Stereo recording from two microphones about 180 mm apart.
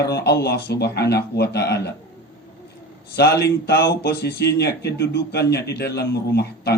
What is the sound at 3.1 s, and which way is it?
Speech, 65° left (ahead or behind).